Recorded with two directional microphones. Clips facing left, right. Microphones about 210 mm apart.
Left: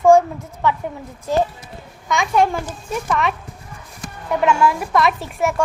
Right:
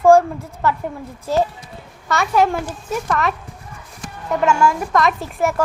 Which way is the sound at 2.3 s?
5° right (ahead or behind).